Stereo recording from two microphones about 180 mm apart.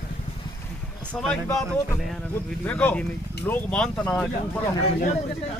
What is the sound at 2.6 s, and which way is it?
Speech, 10° left (ahead or behind).